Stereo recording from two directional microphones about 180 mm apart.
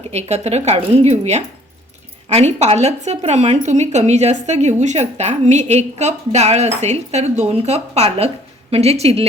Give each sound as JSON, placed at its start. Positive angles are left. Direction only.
{"t": 0.1, "sound": "a woman's voice", "side_deg": -35}